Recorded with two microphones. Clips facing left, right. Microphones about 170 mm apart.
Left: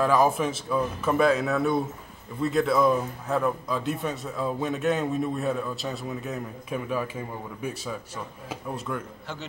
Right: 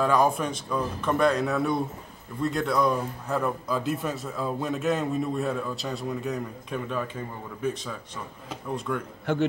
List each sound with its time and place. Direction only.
0.0 s speech: centre (ahead or behind)
9.2 s a man's voice: 55° right (ahead or behind)